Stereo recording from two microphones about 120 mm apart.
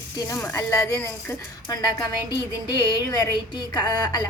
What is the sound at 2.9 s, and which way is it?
A woman's voice, 35° left (ahead or behind).